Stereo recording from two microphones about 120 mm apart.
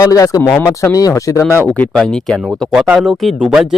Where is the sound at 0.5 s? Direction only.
15° left (ahead or behind).